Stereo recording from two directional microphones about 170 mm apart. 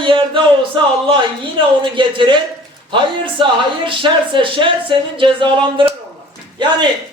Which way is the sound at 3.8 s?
30° right (ahead or behind).